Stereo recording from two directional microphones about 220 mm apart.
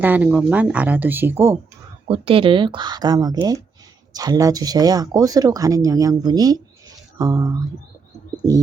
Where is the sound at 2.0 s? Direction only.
25° right (ahead or behind).